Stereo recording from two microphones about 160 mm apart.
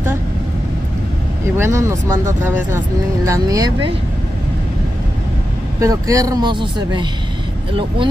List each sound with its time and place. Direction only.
1.6 s speech: 20° right (ahead or behind)
5.8 s speech: 20° right (ahead or behind)